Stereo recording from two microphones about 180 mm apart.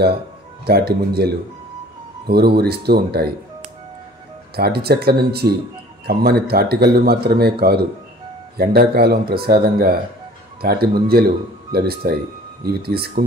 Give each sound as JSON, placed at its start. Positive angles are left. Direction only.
{"t": 0.7, "sound": "a man's voice", "side_deg": -60}
{"t": 4.6, "sound": "a man's voice", "side_deg": -60}
{"t": 8.5, "sound": "a man's voice", "side_deg": -60}